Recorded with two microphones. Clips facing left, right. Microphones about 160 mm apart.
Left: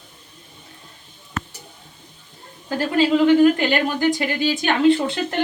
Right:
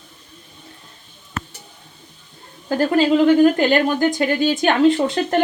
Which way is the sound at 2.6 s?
45° right (ahead or behind).